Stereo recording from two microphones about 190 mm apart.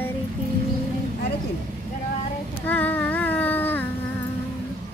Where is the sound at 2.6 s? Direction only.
10° left (ahead or behind).